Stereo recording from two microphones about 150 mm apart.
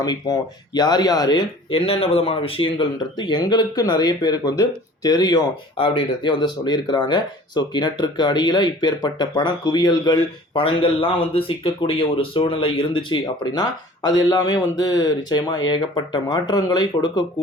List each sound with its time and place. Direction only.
0.0 s speech: 25° left (ahead or behind)
1.7 s speech: 40° left (ahead or behind)